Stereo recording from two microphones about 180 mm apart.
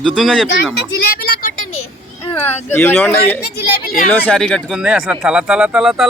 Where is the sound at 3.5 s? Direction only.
55° left (ahead or behind).